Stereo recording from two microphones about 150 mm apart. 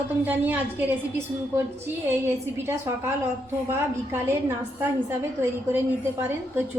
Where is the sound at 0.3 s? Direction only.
10° right (ahead or behind).